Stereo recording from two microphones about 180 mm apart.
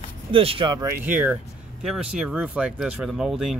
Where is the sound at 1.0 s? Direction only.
10° right (ahead or behind).